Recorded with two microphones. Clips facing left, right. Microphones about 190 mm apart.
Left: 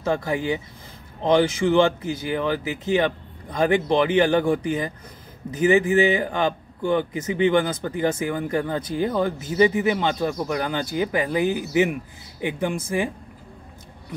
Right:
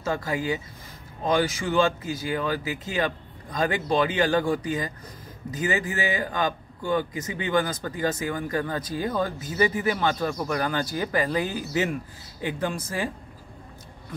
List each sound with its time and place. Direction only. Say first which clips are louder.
0.1 s speech: left 3 dB; 20° left (ahead or behind)